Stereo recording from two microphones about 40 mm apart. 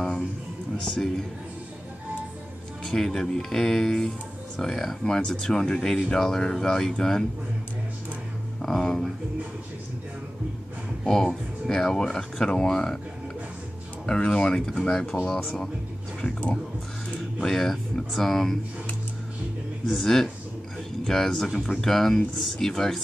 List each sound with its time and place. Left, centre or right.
0.8 s speech: centre
2.8 s speech: centre
8.6 s speech: centre
11.1 s speech: centre
14.0 s speech: left
17.5 s speech: centre
19.9 s speech: centre